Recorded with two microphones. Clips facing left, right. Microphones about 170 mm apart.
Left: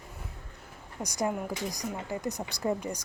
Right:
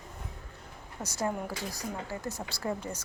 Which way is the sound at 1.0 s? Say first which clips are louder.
Left 2 dB; 15° left (ahead or behind).